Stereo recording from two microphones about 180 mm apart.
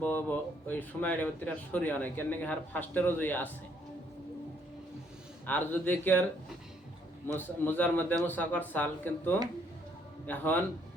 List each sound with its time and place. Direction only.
0.0 s speech: 10° left (ahead or behind)
5.5 s speech: 10° left (ahead or behind)
7.3 s speech: 10° left (ahead or behind)